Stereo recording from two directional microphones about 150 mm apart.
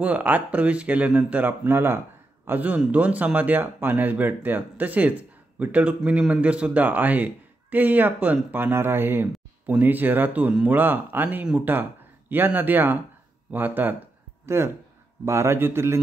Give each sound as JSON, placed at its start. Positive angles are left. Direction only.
{"t": 0.0, "sound": "speech", "side_deg": -10}